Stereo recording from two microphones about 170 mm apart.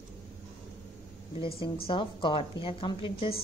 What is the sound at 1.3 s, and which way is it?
A woman's voice, 30° left (ahead or behind).